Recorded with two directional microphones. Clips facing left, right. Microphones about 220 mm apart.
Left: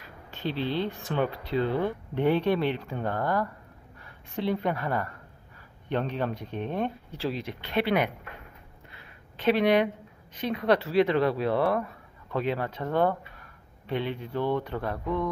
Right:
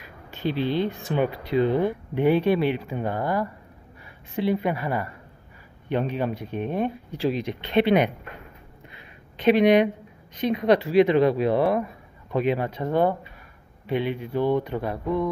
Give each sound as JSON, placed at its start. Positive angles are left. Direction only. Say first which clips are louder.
{"t": 0.0, "sound": "a woman's voice", "louder": "right 5 dB", "side_deg": -10}
{"t": 8.9, "sound": "a sound", "louder": "right 2 dB", "side_deg": -15}
{"t": 10.4, "sound": "speech", "louder": "right 5 dB", "side_deg": -15}